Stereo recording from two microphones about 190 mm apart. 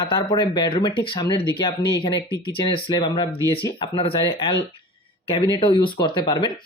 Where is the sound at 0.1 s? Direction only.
25° left (ahead or behind).